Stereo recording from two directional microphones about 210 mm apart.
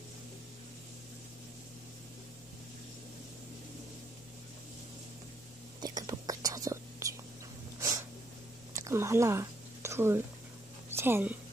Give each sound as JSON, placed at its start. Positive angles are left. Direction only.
{"t": 5.8, "sound": "whispering", "side_deg": -20}
{"t": 8.7, "sound": "a sound", "side_deg": -15}
{"t": 10.9, "sound": "a woman's voice", "side_deg": -10}